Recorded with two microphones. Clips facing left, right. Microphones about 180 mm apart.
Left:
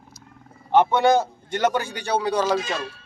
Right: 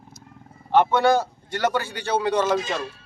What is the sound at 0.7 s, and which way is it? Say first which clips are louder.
Speech: left 1 dB; 15° left (ahead or behind).